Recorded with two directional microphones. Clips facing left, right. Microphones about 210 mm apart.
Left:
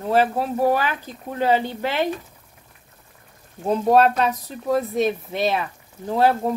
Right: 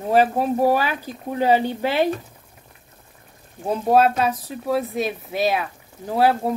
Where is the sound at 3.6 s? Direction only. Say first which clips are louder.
Left 1 dB; 5° right (ahead or behind).